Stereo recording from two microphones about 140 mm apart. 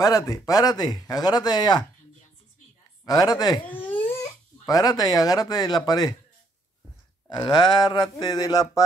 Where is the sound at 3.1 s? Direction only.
30° left (ahead or behind).